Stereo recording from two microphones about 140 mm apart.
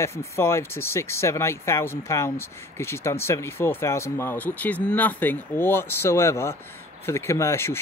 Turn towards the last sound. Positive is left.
turn(degrees=20)  # may be behind; listen again after turning